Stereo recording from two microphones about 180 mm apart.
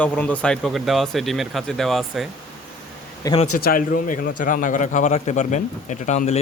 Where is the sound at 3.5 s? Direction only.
50° left (ahead or behind).